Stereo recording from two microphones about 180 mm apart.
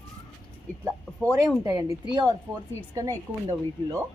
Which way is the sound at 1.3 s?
20° right (ahead or behind).